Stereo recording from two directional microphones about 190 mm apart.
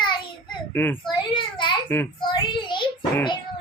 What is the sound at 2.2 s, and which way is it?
Child singing, 25° left (ahead or behind).